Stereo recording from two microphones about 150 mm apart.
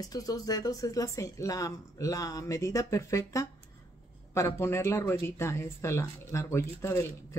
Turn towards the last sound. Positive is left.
turn(degrees=20)  # may be behind; listen again after turning